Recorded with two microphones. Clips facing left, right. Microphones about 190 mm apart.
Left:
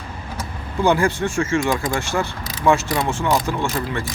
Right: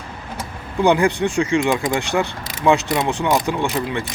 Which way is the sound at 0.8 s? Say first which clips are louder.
Right 2 dB; 15° right (ahead or behind).